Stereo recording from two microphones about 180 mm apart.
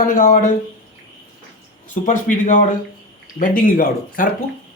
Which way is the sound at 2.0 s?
45° left (ahead or behind).